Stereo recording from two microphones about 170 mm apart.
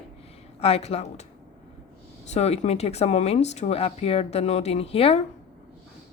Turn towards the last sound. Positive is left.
turn(degrees=35)  # may be behind; listen again after turning